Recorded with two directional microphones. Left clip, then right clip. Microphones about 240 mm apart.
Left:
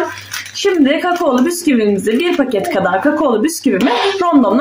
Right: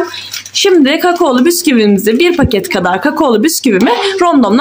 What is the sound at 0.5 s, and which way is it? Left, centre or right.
A woman's voice, right.